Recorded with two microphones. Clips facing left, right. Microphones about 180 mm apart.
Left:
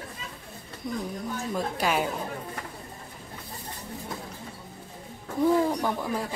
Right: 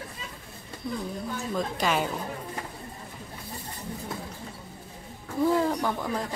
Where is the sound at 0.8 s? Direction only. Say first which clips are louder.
Even; 20° left (ahead or behind).